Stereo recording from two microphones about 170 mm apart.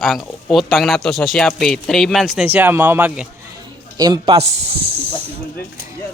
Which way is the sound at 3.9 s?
25° right (ahead or behind).